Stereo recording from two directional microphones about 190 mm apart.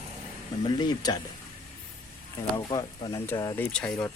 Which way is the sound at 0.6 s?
20° left (ahead or behind).